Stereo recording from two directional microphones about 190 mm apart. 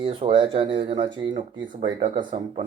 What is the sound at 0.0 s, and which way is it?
Speech, 25° right (ahead or behind).